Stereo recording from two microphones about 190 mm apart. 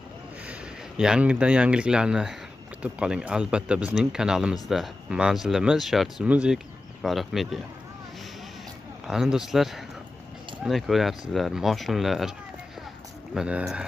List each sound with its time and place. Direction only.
0.5 s speech: 5° right (ahead or behind)
9.0 s speech: 5° right (ahead or behind)